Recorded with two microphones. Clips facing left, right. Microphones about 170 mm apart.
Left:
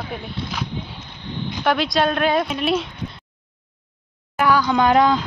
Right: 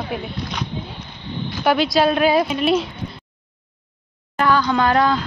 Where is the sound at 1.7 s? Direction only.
5° right (ahead or behind).